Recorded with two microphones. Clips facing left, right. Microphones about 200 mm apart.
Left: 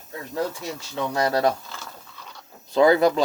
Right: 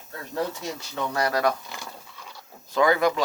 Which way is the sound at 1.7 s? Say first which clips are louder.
Right 1 dB; 15° right (ahead or behind).